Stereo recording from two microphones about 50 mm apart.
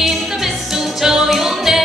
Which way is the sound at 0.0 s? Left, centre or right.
Centre.